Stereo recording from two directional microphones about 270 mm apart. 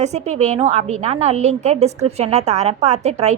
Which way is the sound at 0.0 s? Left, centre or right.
Right.